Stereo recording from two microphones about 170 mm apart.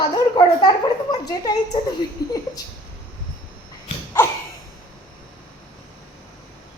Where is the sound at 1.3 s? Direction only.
25° left (ahead or behind).